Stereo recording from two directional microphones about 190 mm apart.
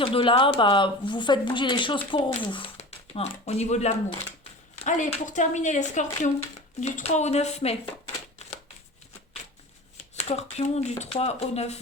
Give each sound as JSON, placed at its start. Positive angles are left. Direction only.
{"t": 0.0, "sound": "speech", "side_deg": 30}
{"t": 10.2, "sound": "speech", "side_deg": 35}